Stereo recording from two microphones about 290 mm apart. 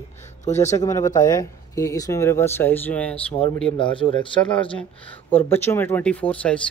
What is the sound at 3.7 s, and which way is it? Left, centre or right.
Speech, centre.